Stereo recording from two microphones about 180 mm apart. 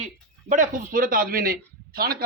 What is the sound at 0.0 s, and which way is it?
Speech, 45° right (ahead or behind).